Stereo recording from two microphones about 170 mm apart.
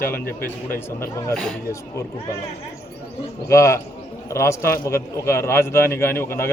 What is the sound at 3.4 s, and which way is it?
A man's voice, 15° left (ahead or behind).